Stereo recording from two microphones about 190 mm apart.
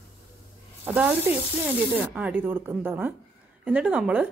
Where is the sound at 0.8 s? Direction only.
10° right (ahead or behind).